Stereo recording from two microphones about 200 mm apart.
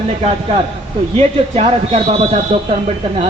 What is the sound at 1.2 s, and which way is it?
A man's voice, 35° right (ahead or behind).